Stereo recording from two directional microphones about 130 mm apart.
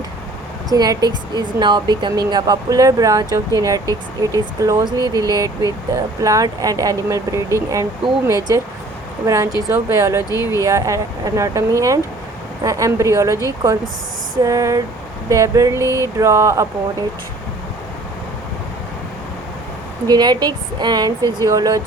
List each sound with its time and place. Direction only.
0.7 s speech: 30° right (ahead or behind)
14.4 s speech: 25° right (ahead or behind)
20.1 s a woman's voice: 30° right (ahead or behind)